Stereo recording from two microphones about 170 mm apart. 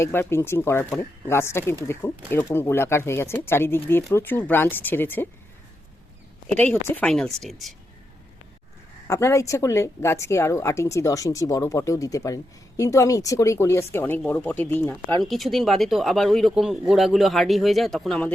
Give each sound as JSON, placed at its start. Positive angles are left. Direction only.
{"t": 0.0, "sound": "speech", "side_deg": 15}
{"t": 6.6, "sound": "speech", "side_deg": 10}
{"t": 9.0, "sound": "speech", "side_deg": 15}
{"t": 15.2, "sound": "speech", "side_deg": 0}